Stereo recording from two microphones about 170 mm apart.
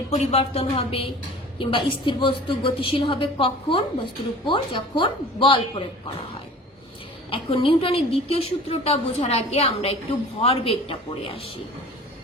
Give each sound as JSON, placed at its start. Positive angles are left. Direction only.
{"t": 0.1, "sound": "a woman's voice", "side_deg": 40}
{"t": 7.3, "sound": "a woman's voice", "side_deg": 30}